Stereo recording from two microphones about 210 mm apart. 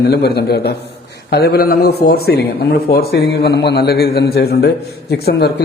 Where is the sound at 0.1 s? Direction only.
50° left (ahead or behind).